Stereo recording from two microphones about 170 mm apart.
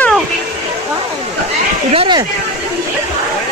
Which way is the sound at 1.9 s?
25° right (ahead or behind).